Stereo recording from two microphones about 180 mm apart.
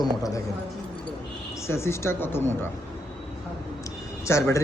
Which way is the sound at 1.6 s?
15° left (ahead or behind).